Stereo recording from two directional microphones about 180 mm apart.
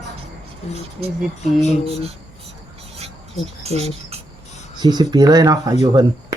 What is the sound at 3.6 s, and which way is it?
Speech, 35° right (ahead or behind).